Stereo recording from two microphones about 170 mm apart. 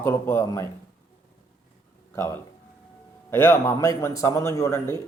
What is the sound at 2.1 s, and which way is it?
A man's voice, 15° left (ahead or behind).